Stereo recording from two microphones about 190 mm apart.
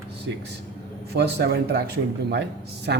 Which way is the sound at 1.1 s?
60° right (ahead or behind).